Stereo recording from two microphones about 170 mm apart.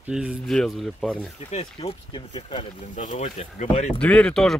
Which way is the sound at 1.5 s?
35° left (ahead or behind).